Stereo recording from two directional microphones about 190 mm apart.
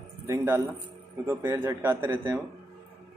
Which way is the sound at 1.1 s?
15° right (ahead or behind).